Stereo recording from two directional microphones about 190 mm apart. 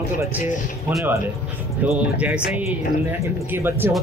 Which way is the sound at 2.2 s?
5° right (ahead or behind).